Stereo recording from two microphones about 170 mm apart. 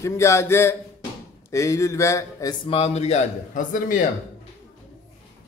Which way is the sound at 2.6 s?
35° left (ahead or behind).